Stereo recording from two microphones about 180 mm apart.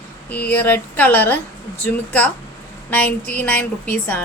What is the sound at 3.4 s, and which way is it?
Speech, 10° left (ahead or behind).